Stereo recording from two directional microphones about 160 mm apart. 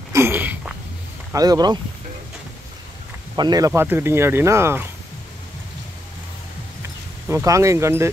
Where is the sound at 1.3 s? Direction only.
25° right (ahead or behind).